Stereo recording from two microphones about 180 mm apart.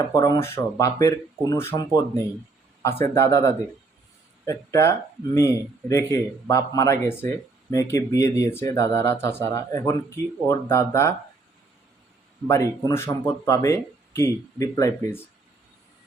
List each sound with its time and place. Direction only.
0.0 s speech: 20° left (ahead or behind)
12.5 s speech: 15° left (ahead or behind)